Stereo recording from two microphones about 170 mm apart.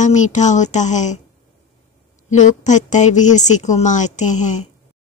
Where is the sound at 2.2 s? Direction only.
45° left (ahead or behind).